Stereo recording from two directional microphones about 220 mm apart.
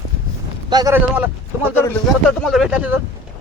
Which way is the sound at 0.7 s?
20° right (ahead or behind).